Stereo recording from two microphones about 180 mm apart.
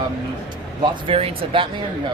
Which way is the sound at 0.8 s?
30° right (ahead or behind).